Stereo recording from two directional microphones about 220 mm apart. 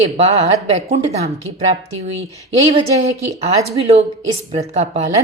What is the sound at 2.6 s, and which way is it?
Speech, 25° right (ahead or behind).